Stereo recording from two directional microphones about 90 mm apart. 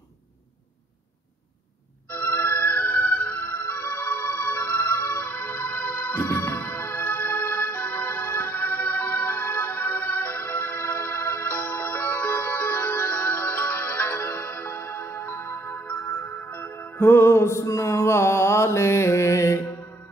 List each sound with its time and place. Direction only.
2.0 s music: 20° left (ahead or behind)